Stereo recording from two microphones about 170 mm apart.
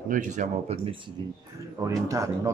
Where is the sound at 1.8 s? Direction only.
20° right (ahead or behind).